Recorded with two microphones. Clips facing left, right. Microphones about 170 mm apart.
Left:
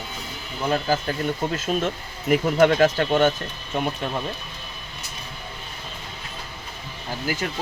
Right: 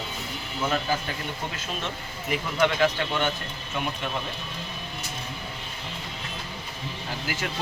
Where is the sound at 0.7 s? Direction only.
40° left (ahead or behind).